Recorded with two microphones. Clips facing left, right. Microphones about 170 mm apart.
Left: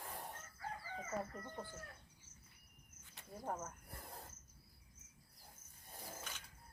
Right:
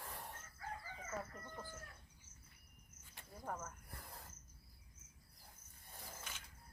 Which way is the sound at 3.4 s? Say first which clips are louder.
Left 2 dB; 25° left (ahead or behind).